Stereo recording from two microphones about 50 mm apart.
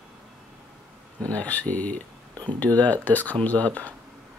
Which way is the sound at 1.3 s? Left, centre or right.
Left.